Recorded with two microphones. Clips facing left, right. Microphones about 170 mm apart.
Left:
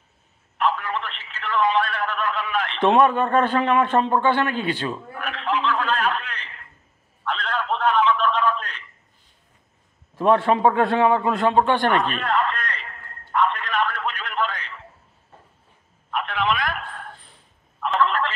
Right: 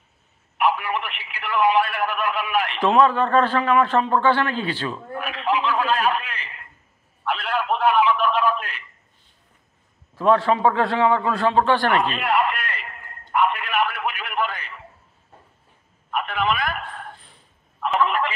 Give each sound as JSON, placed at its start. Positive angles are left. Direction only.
{"t": 0.6, "sound": "a man's voice", "side_deg": -15}
{"t": 2.8, "sound": "a man's voice", "side_deg": 20}
{"t": 5.1, "sound": "a sound", "side_deg": -10}
{"t": 7.2, "sound": "telephone", "side_deg": -10}
{"t": 10.1, "sound": "a man's voice", "side_deg": 25}
{"t": 11.9, "sound": "a sound", "side_deg": -10}
{"t": 16.1, "sound": "telephone", "side_deg": -5}